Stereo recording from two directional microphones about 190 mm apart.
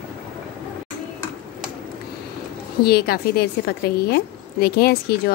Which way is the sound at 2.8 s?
55° left (ahead or behind).